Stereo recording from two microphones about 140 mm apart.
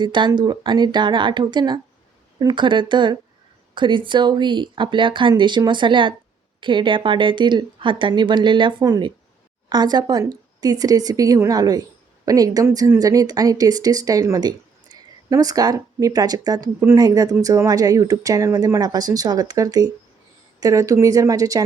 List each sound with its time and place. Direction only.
0.0 s a woman's voice: 35° right (ahead or behind)